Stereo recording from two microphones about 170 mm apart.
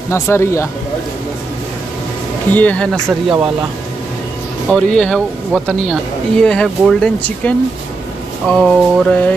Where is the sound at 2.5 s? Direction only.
10° left (ahead or behind).